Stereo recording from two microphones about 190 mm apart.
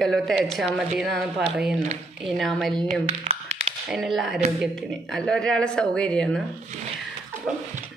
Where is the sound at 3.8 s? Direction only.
Centre (ahead or behind).